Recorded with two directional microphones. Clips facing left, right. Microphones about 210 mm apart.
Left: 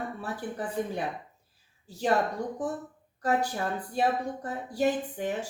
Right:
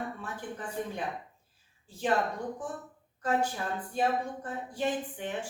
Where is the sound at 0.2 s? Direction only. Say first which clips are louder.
Left 5 dB; 35° left (ahead or behind).